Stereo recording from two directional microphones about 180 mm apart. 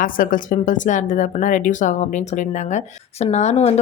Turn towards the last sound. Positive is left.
turn(degrees=35)  # may be behind; listen again after turning